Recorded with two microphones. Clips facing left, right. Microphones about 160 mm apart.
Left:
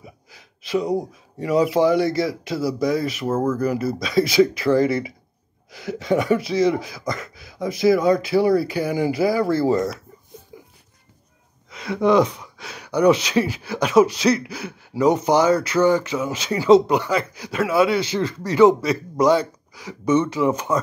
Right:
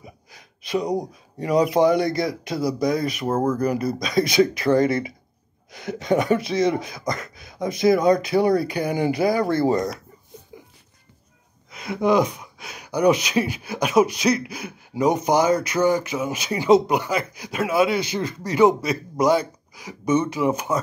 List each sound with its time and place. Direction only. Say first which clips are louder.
0.7 s speech: left 2 dB; 15° right (ahead or behind)
11.7 s speech: left 2 dB; 15° right (ahead or behind)